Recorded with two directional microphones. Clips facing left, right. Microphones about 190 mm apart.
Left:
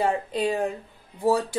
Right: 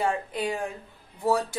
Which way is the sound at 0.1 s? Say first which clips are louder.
Left 4 dB; 25° left (ahead or behind).